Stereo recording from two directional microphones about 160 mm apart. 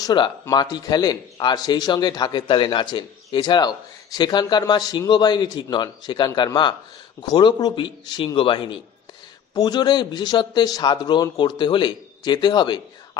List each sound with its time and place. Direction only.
0.0 s speech: 25° left (ahead or behind)